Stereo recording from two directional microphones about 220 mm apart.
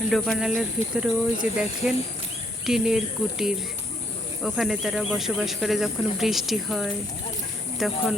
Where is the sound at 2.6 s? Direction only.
Centre (ahead or behind).